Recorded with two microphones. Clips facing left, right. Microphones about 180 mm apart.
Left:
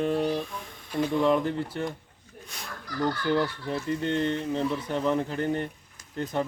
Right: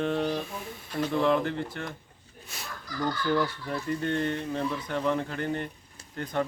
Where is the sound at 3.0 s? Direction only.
30° left (ahead or behind).